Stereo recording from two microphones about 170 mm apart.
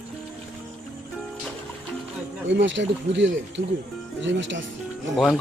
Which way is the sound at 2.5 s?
90° right.